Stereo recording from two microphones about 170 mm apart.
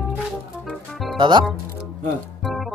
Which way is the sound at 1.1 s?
30° right (ahead or behind).